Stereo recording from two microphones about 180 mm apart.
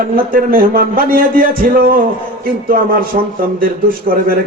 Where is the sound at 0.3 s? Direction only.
50° right (ahead or behind).